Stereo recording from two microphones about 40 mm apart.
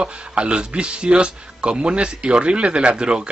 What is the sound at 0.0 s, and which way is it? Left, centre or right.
Speech, right.